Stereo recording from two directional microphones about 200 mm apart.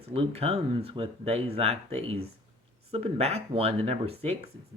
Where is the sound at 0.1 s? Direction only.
30° right (ahead or behind).